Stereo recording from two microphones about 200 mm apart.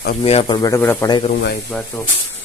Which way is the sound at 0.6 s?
10° left (ahead or behind).